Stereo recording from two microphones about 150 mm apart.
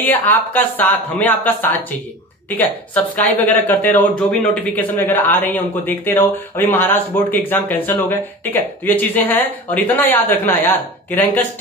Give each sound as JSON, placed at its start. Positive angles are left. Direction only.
{"t": 0.0, "sound": "speech", "side_deg": 10}